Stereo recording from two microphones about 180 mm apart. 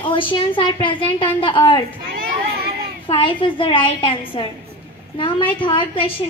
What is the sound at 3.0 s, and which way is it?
A woman's voice, 25° left (ahead or behind).